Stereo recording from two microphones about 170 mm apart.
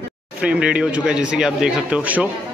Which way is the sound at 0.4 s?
5° right (ahead or behind).